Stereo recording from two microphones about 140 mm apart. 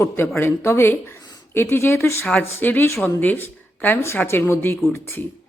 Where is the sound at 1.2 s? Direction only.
30° left (ahead or behind).